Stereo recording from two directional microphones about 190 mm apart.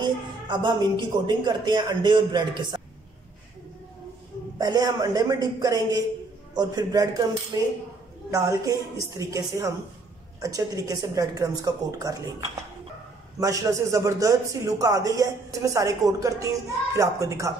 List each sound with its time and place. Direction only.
0.0 s speech: 25° right (ahead or behind)
4.6 s speech: 20° right (ahead or behind)
13.4 s speech: 15° right (ahead or behind)